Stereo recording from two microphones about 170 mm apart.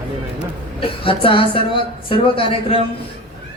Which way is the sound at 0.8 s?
30° left (ahead or behind).